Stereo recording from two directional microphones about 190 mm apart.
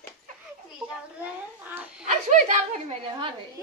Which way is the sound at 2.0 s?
40° right (ahead or behind).